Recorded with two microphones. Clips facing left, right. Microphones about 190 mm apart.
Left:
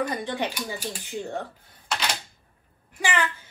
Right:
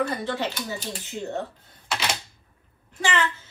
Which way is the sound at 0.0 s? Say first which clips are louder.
Right 1 dB; 15° left (ahead or behind).